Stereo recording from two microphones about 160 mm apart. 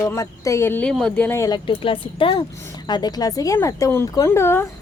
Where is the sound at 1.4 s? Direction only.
25° left (ahead or behind).